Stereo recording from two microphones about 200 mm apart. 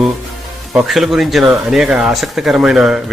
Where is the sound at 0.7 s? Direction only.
Centre (ahead or behind).